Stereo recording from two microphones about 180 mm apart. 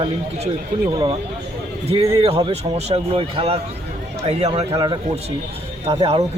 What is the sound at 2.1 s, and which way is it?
Speech, 30° right (ahead or behind).